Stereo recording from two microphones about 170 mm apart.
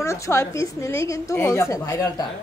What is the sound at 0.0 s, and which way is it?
A woman's voice, 15° left (ahead or behind).